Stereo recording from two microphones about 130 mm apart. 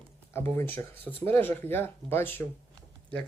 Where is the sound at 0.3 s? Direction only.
15° left (ahead or behind).